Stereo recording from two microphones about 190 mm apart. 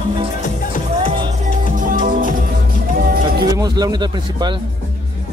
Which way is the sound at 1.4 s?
45° right (ahead or behind).